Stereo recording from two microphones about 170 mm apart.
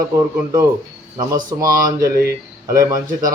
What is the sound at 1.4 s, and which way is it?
Speech, 20° right (ahead or behind).